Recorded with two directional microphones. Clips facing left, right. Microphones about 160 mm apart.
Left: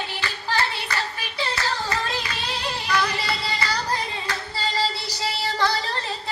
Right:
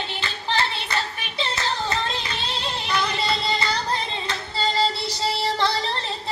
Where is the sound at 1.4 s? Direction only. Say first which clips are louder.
Even; 25° right (ahead or behind).